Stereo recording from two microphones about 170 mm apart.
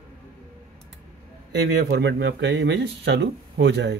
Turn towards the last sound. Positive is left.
turn(degrees=-90)